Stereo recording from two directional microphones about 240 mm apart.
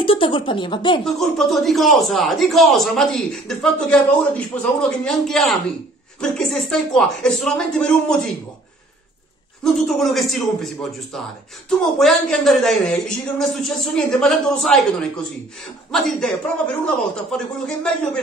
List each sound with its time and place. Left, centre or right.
0.0 s speech: left
1.0 s a man's voice: centre
9.6 s a man's voice: centre